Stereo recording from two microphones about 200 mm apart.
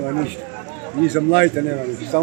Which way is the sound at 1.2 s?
Centre (ahead or behind).